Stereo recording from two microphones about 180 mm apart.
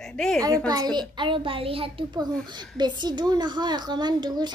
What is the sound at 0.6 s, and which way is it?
A child's voice, 20° right (ahead or behind).